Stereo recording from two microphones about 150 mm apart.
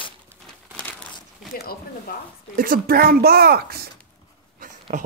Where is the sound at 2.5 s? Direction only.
70° right (ahead or behind); by 3.8 s 90° right.